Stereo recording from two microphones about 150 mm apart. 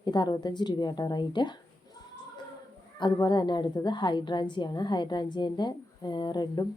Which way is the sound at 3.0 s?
30° left (ahead or behind).